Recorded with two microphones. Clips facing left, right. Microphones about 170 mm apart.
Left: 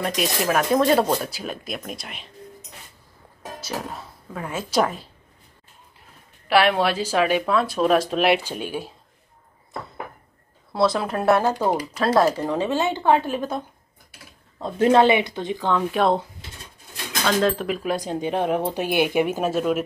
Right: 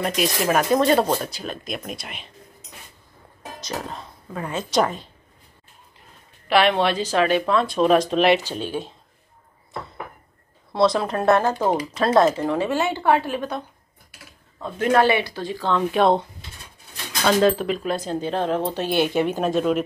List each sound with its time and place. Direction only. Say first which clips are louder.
0.0 s speech: right 1 dB; centre (ahead or behind)
3.6 s speech: even; 5° left (ahead or behind)
6.4 s speech: even; 5° left (ahead or behind)
10.7 s speech: right 2 dB; centre (ahead or behind)
13.3 s speech: left 1 dB; 5° left (ahead or behind)
14.6 s speech: left 2 dB; 25° left (ahead or behind)
15.9 s speech: right 4 dB; centre (ahead or behind)
17.4 s speech: right 3 dB; 5° right (ahead or behind)